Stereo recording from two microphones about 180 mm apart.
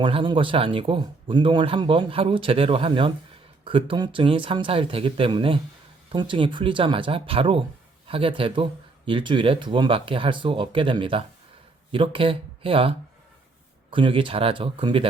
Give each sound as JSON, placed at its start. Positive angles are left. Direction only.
{"t": 0.0, "sound": "speech", "side_deg": -25}